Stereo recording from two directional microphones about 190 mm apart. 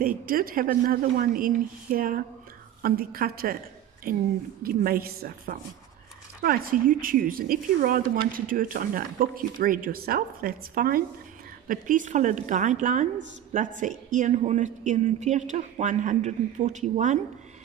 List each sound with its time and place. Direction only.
0.3 s a woman's voice: 50° right (ahead or behind)